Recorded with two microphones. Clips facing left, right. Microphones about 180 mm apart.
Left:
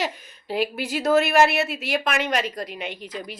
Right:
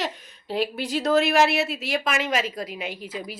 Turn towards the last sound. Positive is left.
turn(degrees=-5)  # may be behind; listen again after turning